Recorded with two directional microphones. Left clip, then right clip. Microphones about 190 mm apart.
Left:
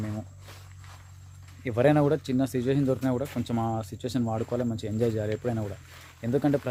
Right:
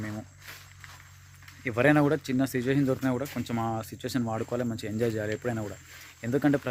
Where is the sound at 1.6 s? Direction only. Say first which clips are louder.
Left 1 dB; centre (ahead or behind).